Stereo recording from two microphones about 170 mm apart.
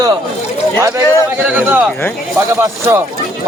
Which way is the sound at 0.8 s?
20° right (ahead or behind).